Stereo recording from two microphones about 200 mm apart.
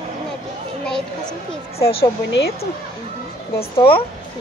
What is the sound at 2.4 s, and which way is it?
Speech, 60° left (ahead or behind).